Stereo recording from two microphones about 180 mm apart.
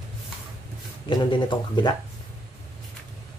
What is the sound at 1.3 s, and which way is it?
Speech, 25° left (ahead or behind).